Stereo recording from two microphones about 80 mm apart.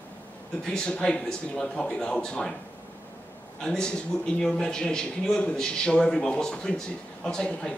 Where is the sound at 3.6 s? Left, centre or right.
Centre.